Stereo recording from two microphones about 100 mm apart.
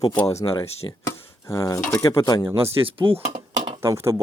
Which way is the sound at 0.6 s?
75° left (ahead or behind).